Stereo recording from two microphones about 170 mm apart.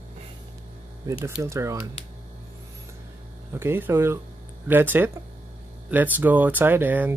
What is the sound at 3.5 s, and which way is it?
Speech, 15° right (ahead or behind).